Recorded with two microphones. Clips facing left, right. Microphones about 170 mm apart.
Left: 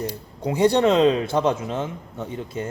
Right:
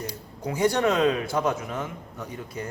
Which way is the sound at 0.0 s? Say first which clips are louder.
Left 5 dB; 25° left (ahead or behind).